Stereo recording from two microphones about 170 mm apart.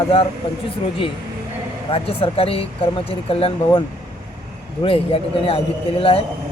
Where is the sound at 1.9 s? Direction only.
35° left (ahead or behind).